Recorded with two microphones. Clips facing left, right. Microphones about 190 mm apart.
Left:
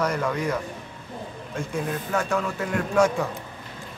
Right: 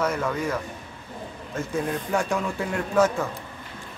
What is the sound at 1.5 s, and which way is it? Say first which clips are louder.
Speech: right 2 dB; 5° right (ahead or behind).